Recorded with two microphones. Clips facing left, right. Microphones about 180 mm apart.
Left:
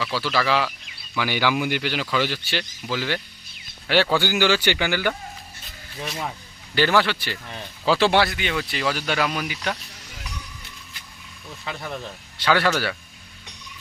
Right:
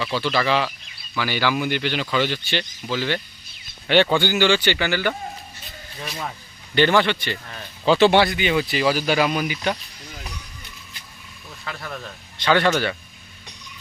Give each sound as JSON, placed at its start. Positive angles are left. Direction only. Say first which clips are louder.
{"t": 0.0, "sound": "speech", "louder": "right 2 dB", "side_deg": 5}
{"t": 6.7, "sound": "speech", "louder": "right 2 dB", "side_deg": 5}
{"t": 11.6, "sound": "speech", "louder": "left 1 dB", "side_deg": 20}
{"t": 12.4, "sound": "speech", "louder": "right 2 dB", "side_deg": 5}